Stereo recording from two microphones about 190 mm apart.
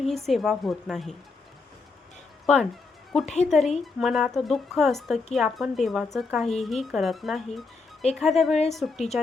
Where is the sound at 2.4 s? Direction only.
5° left (ahead or behind).